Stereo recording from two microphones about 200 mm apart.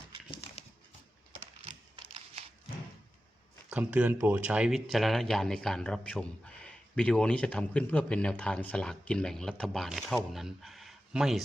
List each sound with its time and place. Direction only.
0.3 s dog: 30° left (ahead or behind)
1.6 s a sound: 30° right (ahead or behind)
3.7 s speech: 5° right (ahead or behind)